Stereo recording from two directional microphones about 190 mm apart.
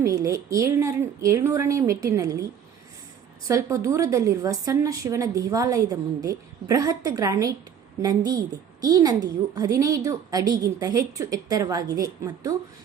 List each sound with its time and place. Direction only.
0.0 s a woman's voice: 15° right (ahead or behind)
3.4 s a woman's voice: 15° right (ahead or behind)